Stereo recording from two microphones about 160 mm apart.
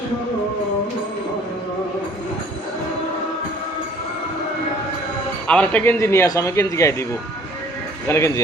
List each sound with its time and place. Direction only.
5.5 s speech: 10° left (ahead or behind)
8.0 s speech: 20° left (ahead or behind)